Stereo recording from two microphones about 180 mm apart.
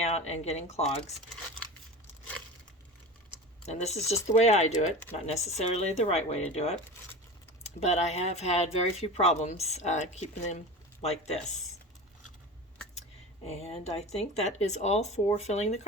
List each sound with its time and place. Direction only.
0.0 s speech: 40° left (ahead or behind)
3.7 s speech: 40° left (ahead or behind)
13.7 s speech: 35° left (ahead or behind)